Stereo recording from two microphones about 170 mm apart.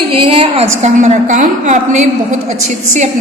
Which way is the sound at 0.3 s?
35° right (ahead or behind).